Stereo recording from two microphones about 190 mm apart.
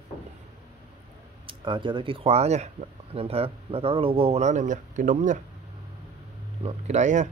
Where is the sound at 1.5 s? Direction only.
25° right (ahead or behind); by 5.4 s 45° right (ahead or behind).